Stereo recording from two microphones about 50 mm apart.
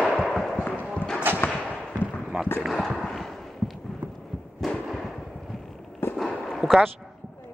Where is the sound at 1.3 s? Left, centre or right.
Right.